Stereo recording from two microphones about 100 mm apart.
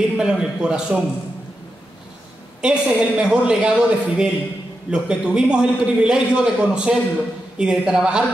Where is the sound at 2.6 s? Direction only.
10° right (ahead or behind).